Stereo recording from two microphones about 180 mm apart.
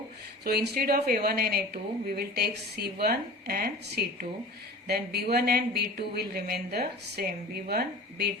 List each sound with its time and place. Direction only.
0.4 s speech: 60° right (ahead or behind)